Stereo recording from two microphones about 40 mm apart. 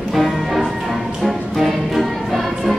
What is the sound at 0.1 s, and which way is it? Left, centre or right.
Music, centre.